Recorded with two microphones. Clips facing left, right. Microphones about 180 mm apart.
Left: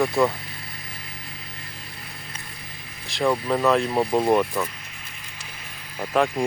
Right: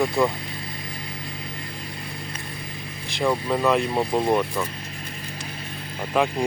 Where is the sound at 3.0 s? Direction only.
Centre (ahead or behind).